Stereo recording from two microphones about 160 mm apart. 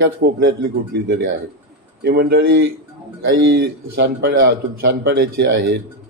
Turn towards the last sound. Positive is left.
turn(degrees=-85)